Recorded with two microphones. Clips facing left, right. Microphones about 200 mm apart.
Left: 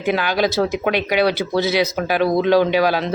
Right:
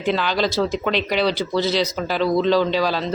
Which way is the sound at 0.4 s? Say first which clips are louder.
Left 2 dB; 55° left (ahead or behind).